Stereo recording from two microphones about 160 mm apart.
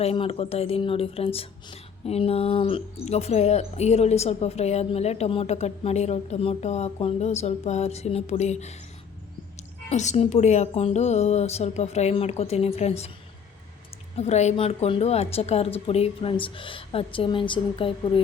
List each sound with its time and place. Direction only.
0.0 s speech: 35° left (ahead or behind)
9.9 s speech: 45° left (ahead or behind)
14.2 s speech: 45° left (ahead or behind)